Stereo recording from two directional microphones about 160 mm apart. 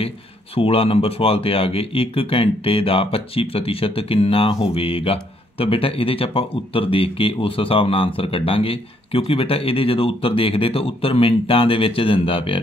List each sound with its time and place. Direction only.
0.6 s speech: 35° left (ahead or behind)